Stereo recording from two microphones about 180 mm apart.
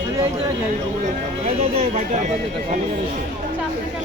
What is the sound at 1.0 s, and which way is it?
Speech, 45° right (ahead or behind).